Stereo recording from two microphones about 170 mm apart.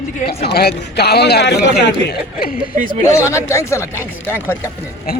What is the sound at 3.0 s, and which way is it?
Speech, 15° left (ahead or behind).